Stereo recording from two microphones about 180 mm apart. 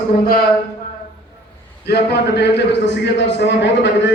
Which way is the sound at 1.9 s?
70° left (ahead or behind).